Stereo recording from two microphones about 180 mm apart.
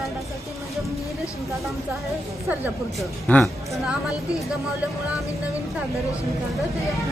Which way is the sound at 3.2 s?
10° left (ahead or behind).